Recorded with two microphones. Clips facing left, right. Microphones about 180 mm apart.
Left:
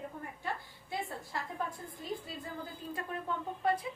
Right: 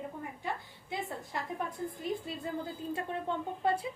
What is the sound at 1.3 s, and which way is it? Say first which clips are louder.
A woman's voice: right 2 dB; 20° right (ahead or behind).